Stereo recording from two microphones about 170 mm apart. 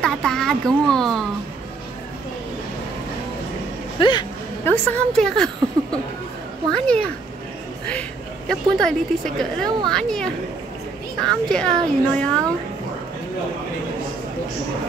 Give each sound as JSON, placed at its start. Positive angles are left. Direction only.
{"t": 0.0, "sound": "a woman's voice", "side_deg": 5}
{"t": 4.0, "sound": "speech", "side_deg": 25}
{"t": 4.6, "sound": "a woman's voice", "side_deg": 5}
{"t": 8.5, "sound": "a woman's voice", "side_deg": 5}